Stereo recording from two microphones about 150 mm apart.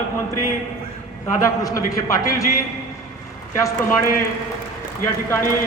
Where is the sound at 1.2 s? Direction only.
20° left (ahead or behind).